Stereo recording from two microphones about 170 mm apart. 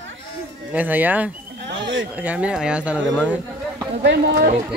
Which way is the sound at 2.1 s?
10° right (ahead or behind).